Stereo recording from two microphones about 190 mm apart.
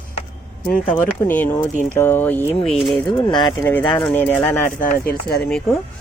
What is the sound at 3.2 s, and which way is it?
Speech, 20° left (ahead or behind).